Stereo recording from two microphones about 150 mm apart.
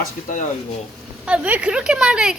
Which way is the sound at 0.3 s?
65° left (ahead or behind).